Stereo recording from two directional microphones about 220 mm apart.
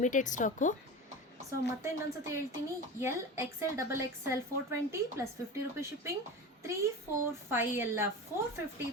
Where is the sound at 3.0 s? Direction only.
10° right (ahead or behind).